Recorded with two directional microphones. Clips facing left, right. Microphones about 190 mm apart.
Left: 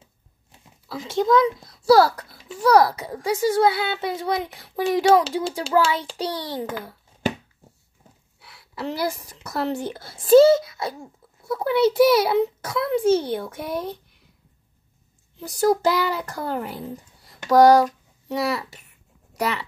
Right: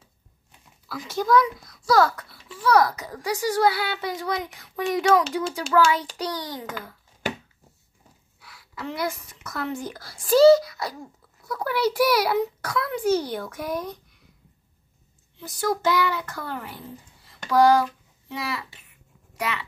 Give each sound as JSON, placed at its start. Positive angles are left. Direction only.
{"t": 0.5, "sound": "speech", "side_deg": 25}
{"t": 8.4, "sound": "a woman's voice", "side_deg": 25}
{"t": 15.4, "sound": "a child's voice", "side_deg": 35}